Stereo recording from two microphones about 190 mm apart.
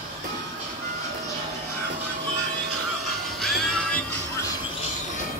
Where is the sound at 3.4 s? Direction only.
5° left (ahead or behind).